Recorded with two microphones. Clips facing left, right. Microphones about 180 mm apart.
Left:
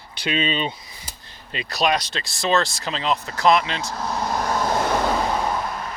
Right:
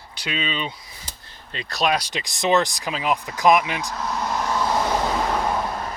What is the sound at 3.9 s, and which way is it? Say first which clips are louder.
Speech: left 2 dB; 35° left (ahead or behind).